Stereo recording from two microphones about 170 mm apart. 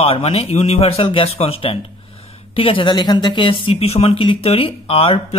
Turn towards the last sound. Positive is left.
turn(degrees=35)  # may be behind; listen again after turning